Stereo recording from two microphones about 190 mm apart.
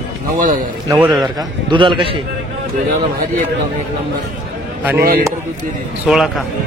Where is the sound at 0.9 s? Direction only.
5° right (ahead or behind).